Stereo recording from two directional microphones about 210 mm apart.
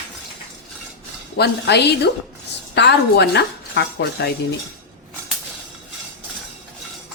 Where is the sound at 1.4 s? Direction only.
50° left (ahead or behind).